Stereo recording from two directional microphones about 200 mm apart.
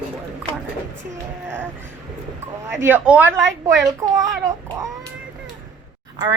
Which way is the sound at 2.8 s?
10° right (ahead or behind).